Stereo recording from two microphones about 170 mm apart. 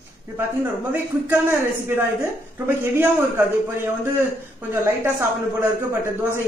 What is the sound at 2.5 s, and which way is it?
A man's voice, 10° right (ahead or behind).